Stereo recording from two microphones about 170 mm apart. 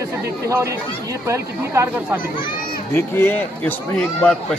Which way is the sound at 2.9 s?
15° left (ahead or behind).